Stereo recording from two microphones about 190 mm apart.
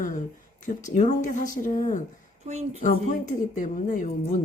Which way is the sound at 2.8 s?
40° left (ahead or behind).